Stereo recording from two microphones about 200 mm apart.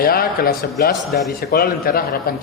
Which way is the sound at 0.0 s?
50° left (ahead or behind).